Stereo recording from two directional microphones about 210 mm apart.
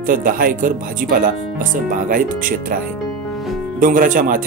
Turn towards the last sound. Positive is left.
turn(degrees=-40)  # may be behind; listen again after turning